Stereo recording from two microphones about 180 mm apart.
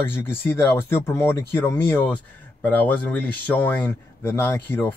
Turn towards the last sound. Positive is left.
turn(degrees=10)  # may be behind; listen again after turning